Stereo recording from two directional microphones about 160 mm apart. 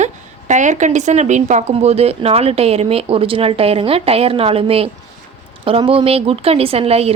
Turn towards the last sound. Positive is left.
turn(degrees=-40)  # may be behind; listen again after turning